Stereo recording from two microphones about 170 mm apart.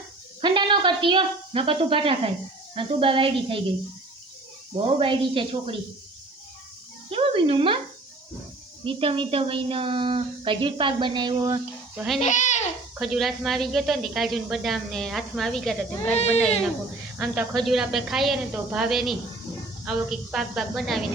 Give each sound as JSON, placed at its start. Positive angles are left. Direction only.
{"t": 0.4, "sound": "a woman's voice", "side_deg": -30}
{"t": 4.9, "sound": "a woman's voice", "side_deg": -30}
{"t": 7.1, "sound": "speech", "side_deg": -35}
{"t": 8.8, "sound": "a woman's voice", "side_deg": -30}
{"t": 12.2, "sound": "speech", "side_deg": 45}
{"t": 13.0, "sound": "speech", "side_deg": 0}
{"t": 17.2, "sound": "speech", "side_deg": 0}